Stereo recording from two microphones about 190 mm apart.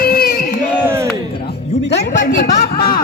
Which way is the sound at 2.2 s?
40° left (ahead or behind).